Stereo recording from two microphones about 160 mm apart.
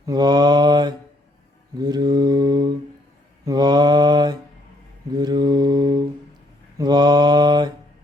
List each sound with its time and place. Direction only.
0.0 s mantra: 25° right (ahead or behind)